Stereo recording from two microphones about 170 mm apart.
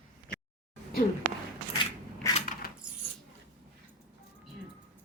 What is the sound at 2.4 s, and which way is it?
Coin, 55° left (ahead or behind).